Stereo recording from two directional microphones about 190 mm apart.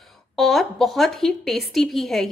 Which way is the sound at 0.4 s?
Centre (ahead or behind).